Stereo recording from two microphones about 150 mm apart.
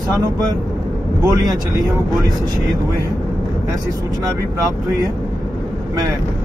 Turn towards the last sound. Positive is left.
turn(degrees=-25)  # may be behind; listen again after turning